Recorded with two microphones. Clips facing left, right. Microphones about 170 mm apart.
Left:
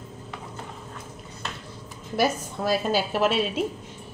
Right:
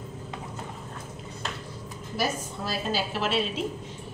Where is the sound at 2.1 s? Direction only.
50° left (ahead or behind).